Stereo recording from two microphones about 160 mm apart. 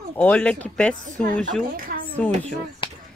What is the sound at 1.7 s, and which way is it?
Speech, 60° right (ahead or behind).